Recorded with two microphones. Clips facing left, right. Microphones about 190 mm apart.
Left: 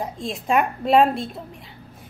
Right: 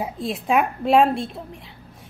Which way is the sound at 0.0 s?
Centre (ahead or behind).